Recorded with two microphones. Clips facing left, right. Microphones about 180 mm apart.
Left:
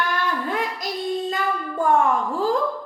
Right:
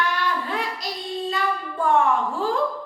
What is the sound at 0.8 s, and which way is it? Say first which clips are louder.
Child singing: left 4 dB; 50° left (ahead or behind).